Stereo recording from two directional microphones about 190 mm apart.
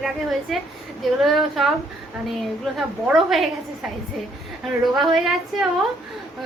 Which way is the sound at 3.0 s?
Centre (ahead or behind).